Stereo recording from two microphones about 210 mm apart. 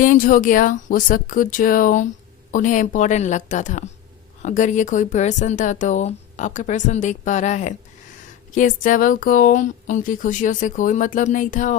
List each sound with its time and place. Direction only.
0.0 s speech: 40° left (ahead or behind)